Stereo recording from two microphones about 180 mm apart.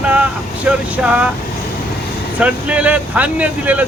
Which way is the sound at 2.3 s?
5° right (ahead or behind).